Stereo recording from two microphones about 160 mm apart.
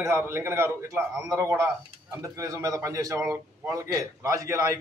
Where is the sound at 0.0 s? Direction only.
15° right (ahead or behind).